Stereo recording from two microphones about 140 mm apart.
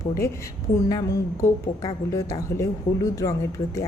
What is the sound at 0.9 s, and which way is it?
A woman's voice, 25° left (ahead or behind).